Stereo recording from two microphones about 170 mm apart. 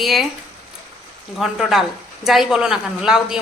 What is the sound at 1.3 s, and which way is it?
A woman's voice, centre (ahead or behind).